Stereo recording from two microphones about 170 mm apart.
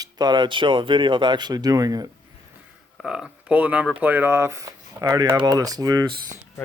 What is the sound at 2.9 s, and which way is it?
Speech, 5° right (ahead or behind).